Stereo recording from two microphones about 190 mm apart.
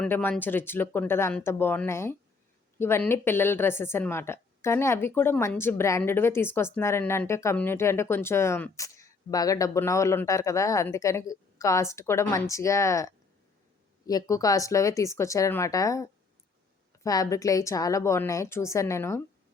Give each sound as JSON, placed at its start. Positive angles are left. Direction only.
{"t": 0.0, "sound": "a woman's voice", "side_deg": 10}